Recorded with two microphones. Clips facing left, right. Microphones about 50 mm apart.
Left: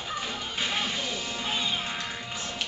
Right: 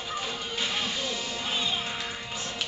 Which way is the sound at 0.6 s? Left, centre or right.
Left.